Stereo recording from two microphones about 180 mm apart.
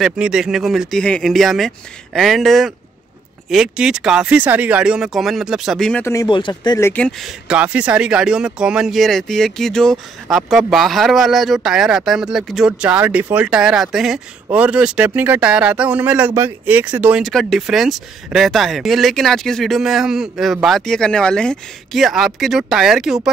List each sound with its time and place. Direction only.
0.0 s speech: 5° right (ahead or behind)
6.0 s speech: 20° left (ahead or behind)
6.9 s speech: 5° left (ahead or behind)